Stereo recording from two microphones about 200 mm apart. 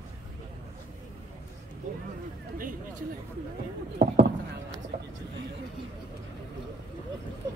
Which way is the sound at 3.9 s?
55° right (ahead or behind).